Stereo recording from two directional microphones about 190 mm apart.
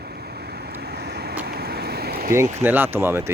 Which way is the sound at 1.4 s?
55° right (ahead or behind).